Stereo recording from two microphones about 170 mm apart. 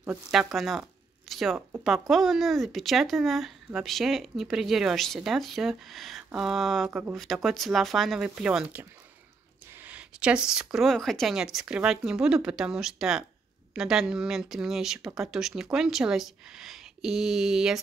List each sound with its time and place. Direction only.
0.3 s speech: centre (ahead or behind)